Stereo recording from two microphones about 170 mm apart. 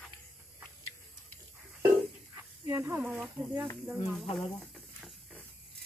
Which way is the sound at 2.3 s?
15° right (ahead or behind).